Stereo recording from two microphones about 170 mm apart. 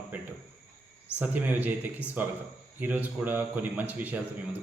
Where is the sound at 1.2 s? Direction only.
10° right (ahead or behind).